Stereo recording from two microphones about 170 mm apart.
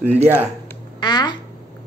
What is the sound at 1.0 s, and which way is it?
Speech, 25° left (ahead or behind).